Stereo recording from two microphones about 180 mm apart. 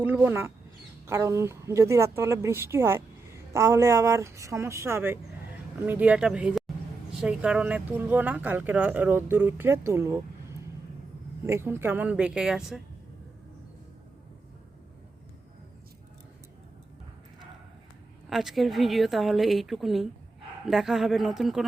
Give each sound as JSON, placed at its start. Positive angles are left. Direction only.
{"t": 0.0, "sound": "a woman's voice", "side_deg": -10}
{"t": 18.3, "sound": "a woman's voice", "side_deg": 0}